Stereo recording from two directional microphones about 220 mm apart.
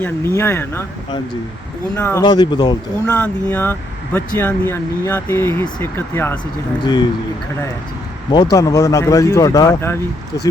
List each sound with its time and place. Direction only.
0.0 s speech: 10° left (ahead or behind)
2.2 s speech: 20° left (ahead or behind)
3.1 s speech: 10° left (ahead or behind)
8.5 s speech: 15° left (ahead or behind)